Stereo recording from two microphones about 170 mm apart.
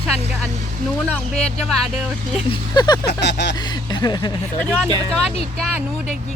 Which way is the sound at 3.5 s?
25° left (ahead or behind).